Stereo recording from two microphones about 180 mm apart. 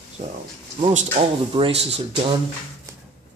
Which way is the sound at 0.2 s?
45° right (ahead or behind).